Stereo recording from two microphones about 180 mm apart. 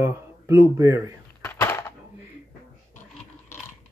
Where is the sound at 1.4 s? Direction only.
15° left (ahead or behind).